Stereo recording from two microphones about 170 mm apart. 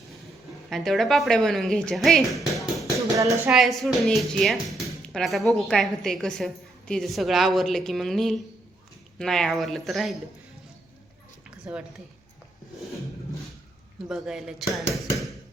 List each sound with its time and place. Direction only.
0.7 s speech: centre (ahead or behind)
3.2 s speech: 20° right (ahead or behind)
3.5 s speech: centre (ahead or behind)
11.6 s speech: 5° right (ahead or behind)
14.1 s speech: 5° right (ahead or behind)